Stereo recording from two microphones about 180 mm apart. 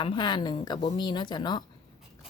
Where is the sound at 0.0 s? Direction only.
25° left (ahead or behind).